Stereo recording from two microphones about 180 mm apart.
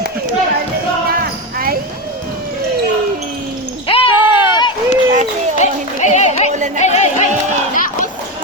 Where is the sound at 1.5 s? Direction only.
55° right (ahead or behind).